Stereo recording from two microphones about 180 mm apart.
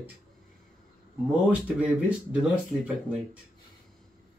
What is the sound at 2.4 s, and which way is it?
Speech, 5° right (ahead or behind).